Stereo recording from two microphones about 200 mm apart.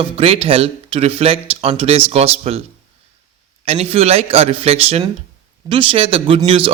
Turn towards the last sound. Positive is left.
turn(degrees=-25)  # may be behind; listen again after turning